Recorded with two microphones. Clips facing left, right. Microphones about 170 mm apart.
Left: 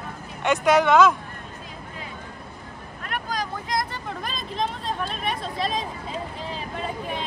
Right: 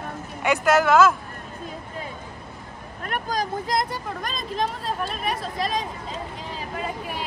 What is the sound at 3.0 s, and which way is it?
Vehicle, 45° right (ahead or behind).